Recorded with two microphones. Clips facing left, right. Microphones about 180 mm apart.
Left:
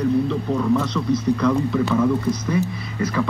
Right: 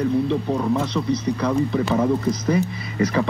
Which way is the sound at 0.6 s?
30° right (ahead or behind).